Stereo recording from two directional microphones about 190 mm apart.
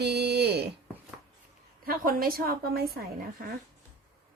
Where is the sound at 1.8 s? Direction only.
50° right (ahead or behind).